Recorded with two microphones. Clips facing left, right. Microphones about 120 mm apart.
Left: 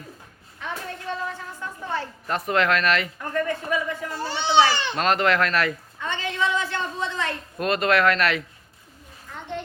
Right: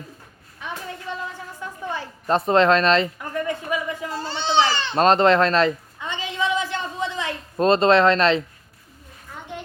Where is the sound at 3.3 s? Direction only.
15° right (ahead or behind).